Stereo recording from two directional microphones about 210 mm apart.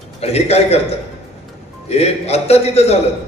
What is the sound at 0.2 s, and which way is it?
A man's voice, 30° left (ahead or behind).